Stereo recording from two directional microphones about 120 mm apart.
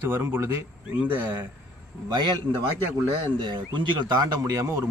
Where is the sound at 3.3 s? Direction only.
40° right (ahead or behind).